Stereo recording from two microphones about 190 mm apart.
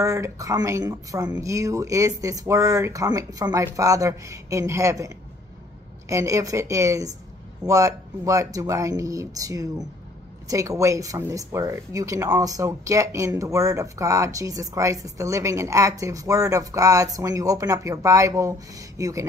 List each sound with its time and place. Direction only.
0.0 s speech: 15° right (ahead or behind)